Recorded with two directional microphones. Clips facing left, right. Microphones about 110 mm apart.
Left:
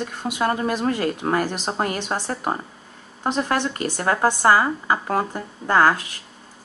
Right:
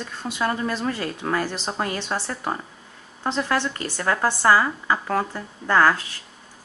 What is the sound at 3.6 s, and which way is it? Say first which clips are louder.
Speech: left 2 dB; 15° left (ahead or behind).